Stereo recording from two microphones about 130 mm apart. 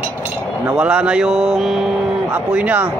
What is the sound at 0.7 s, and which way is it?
Speech, 10° right (ahead or behind).